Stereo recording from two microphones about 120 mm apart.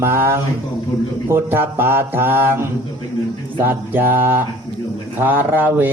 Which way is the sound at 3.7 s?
20° right (ahead or behind).